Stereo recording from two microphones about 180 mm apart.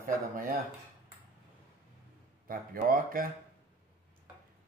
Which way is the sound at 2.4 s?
50° right (ahead or behind).